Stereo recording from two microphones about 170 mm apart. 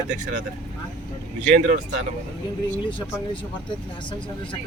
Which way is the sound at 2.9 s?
30° left (ahead or behind).